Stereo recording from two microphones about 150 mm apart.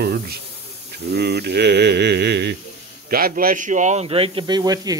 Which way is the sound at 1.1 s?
90° right.